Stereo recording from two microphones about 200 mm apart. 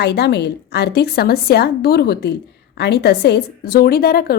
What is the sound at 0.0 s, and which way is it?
A woman's voice, 55° left (ahead or behind).